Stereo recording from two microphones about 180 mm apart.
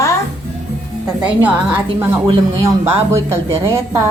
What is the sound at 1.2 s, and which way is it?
Speech, 10° right (ahead or behind).